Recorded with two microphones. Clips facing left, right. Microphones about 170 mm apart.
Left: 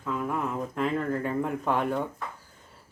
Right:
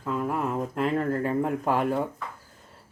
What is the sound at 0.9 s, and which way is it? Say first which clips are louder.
Speech: right 4 dB; 35° right (ahead or behind).